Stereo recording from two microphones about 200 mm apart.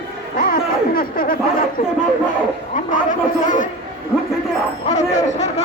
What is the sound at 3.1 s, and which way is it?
Speech, 40° left (ahead or behind).